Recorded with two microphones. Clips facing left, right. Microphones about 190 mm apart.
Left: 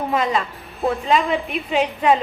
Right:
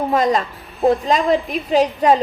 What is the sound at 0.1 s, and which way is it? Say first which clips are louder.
Speech: right 4 dB; 40° right (ahead or behind).